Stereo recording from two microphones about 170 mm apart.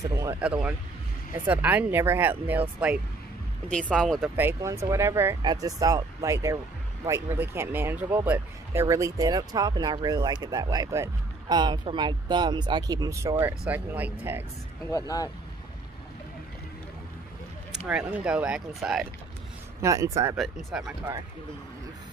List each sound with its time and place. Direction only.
0.1 s speech: 20° right (ahead or behind)
0.4 s speech: 5° right (ahead or behind)
3.6 s speech: 5° left (ahead or behind)
4.4 s speech: 15° right (ahead or behind)
14.9 s speech: 20° left (ahead or behind)
17.8 s speech: 10° right (ahead or behind)
19.8 s speech: 20° right (ahead or behind)
20.3 s speech: centre (ahead or behind)
20.8 s speech: 20° right (ahead or behind)